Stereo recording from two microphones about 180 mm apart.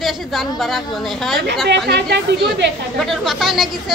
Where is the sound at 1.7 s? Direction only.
70° right (ahead or behind).